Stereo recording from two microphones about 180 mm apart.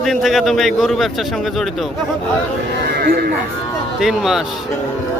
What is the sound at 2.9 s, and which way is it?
Speech, 60° right (ahead or behind).